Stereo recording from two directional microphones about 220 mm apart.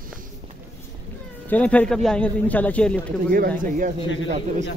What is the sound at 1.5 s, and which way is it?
A man's voice, 5° left (ahead or behind).